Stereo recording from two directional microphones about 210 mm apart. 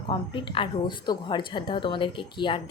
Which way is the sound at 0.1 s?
25° left (ahead or behind).